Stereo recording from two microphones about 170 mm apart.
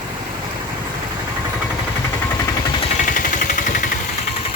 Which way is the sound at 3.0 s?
50° left (ahead or behind).